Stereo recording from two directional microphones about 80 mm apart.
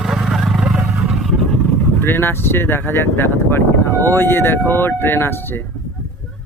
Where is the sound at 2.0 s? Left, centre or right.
Left.